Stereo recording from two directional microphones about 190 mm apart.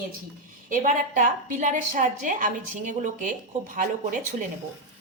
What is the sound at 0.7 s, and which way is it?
A woman's voice, 40° right (ahead or behind).